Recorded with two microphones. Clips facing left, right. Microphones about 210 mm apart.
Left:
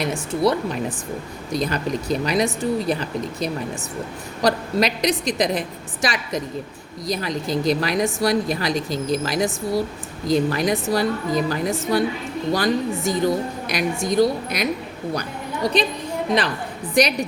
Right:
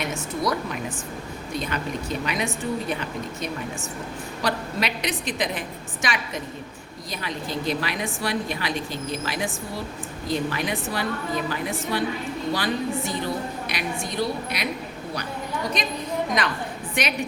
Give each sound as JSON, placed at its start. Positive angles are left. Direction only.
{"t": 0.0, "sound": "a woman's voice", "side_deg": 35}
{"t": 15.6, "sound": "a woman's voice", "side_deg": 30}
{"t": 17.0, "sound": "a woman's voice", "side_deg": 40}